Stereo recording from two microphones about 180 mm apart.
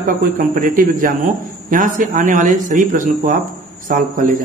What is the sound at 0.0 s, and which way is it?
A man's voice, 45° right (ahead or behind).